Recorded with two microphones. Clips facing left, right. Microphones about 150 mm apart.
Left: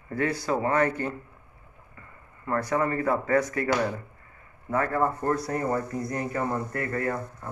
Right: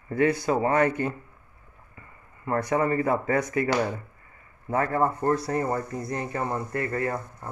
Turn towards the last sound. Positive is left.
turn(degrees=-25)  # may be behind; listen again after turning